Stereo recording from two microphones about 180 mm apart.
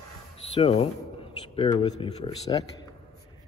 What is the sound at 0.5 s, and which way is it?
A man's voice, 35° left (ahead or behind).